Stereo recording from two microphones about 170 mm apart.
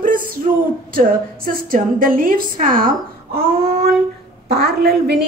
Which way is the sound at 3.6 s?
65° right (ahead or behind).